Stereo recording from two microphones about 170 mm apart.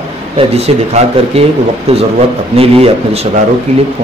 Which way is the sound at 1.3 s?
40° right (ahead or behind).